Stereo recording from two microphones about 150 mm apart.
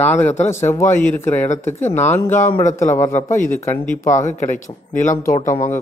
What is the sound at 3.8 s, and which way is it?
Speech, 60° left (ahead or behind).